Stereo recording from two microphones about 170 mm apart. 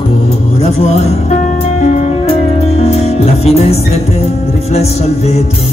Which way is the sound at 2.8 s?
40° left (ahead or behind).